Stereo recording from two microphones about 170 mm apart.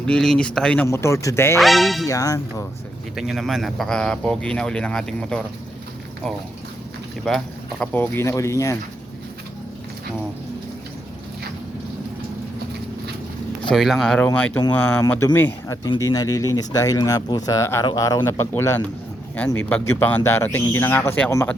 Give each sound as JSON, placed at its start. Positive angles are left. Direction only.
{"t": 0.0, "sound": "speech", "side_deg": 5}
{"t": 0.9, "sound": "speech", "side_deg": 15}
{"t": 1.5, "sound": "speech", "side_deg": 0}
{"t": 2.0, "sound": "speech", "side_deg": 20}
{"t": 3.2, "sound": "speech", "side_deg": 0}
{"t": 7.3, "sound": "speech", "side_deg": 5}
{"t": 13.7, "sound": "speech", "side_deg": 0}